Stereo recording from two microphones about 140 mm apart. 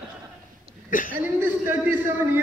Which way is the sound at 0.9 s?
75° left (ahead or behind).